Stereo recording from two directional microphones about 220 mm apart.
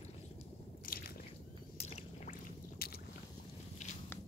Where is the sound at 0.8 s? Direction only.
40° left (ahead or behind).